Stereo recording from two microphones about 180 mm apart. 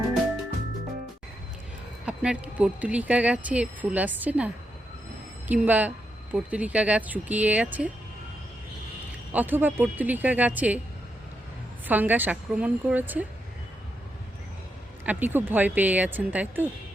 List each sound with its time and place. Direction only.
2.0 s speech: 5° right (ahead or behind)
9.3 s speech: 10° right (ahead or behind)
11.9 s speech: 10° right (ahead or behind)
15.0 s speech: 10° right (ahead or behind)